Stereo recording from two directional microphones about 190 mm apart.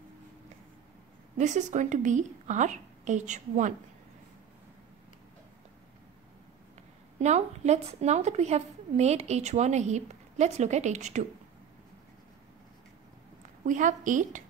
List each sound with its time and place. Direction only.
1.4 s a woman's voice: 40° right (ahead or behind)
7.2 s a woman's voice: 35° right (ahead or behind)
13.7 s a woman's voice: 40° right (ahead or behind)